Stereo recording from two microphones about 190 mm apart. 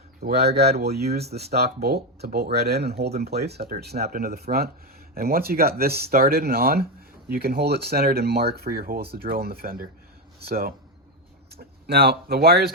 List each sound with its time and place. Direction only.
0.2 s speech: 55° right (ahead or behind)
11.5 s speech: 55° right (ahead or behind)